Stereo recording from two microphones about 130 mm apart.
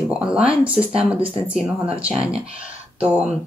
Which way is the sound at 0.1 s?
10° right (ahead or behind).